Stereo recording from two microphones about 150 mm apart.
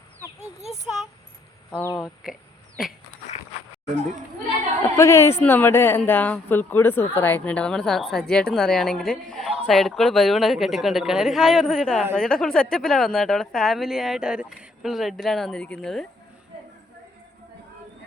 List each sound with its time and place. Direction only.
1.8 s speech: 25° left (ahead or behind)
4.8 s speech: 20° left (ahead or behind); by 16.0 s 5° left (ahead or behind)